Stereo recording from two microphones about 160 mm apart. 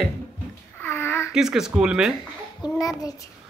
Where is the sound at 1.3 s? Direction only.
5° right (ahead or behind).